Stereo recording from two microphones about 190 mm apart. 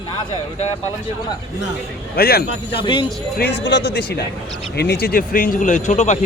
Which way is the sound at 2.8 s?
25° left (ahead or behind).